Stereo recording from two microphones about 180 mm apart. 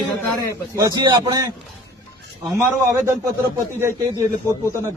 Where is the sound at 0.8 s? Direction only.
20° right (ahead or behind).